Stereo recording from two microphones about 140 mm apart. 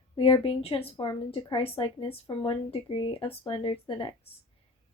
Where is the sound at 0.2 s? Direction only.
40° left (ahead or behind).